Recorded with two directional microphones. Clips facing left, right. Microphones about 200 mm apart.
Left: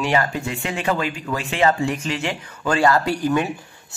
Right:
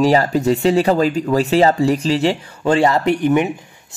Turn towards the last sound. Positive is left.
turn(degrees=-20)  # may be behind; listen again after turning